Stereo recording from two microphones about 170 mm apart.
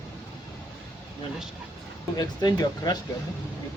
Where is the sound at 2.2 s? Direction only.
25° left (ahead or behind).